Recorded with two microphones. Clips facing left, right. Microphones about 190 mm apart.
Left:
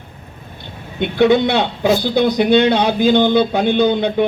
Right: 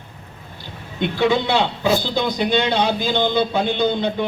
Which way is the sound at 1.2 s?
60° left (ahead or behind).